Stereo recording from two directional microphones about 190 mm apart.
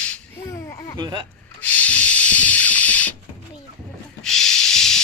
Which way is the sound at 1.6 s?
5° left (ahead or behind).